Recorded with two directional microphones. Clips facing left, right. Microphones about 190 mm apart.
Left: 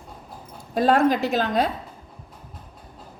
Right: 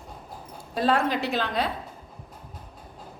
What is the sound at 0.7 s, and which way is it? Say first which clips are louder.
Speech: left 5 dB; 45° left (ahead or behind).